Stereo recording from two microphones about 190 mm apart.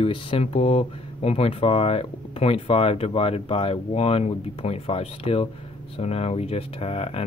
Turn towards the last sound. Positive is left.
turn(degrees=30)  # may be behind; listen again after turning